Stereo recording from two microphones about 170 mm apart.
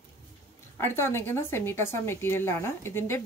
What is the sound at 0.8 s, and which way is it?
Speech, 15° left (ahead or behind).